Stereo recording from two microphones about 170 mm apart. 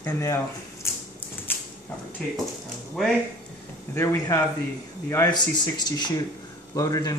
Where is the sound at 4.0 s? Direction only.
15° left (ahead or behind).